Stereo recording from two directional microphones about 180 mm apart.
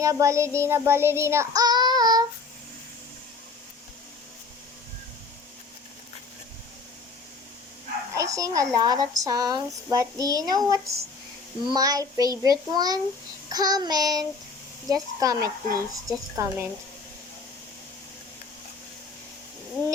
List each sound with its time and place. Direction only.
0.0 s child singing: 20° right (ahead or behind)
8.1 s a woman's voice: 20° right (ahead or behind)